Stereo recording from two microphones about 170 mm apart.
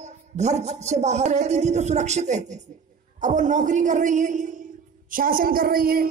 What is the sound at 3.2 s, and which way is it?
Music, 45° right (ahead or behind).